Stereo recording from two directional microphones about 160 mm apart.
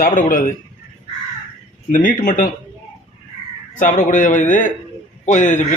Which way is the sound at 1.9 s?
55° left (ahead or behind).